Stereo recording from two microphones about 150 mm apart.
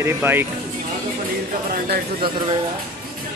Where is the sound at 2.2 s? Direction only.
90° right.